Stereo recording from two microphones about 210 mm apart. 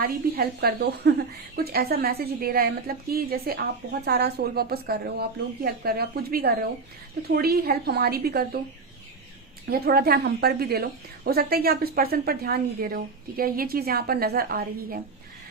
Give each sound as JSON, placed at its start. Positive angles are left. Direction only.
{"t": 0.0, "sound": "a woman's voice", "side_deg": -45}
{"t": 9.6, "sound": "a woman's voice", "side_deg": -45}